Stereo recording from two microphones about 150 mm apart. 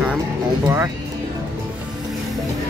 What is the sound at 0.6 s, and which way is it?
Speech, 20° right (ahead or behind).